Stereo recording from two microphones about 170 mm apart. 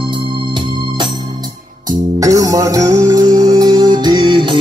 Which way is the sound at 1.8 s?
20° right (ahead or behind).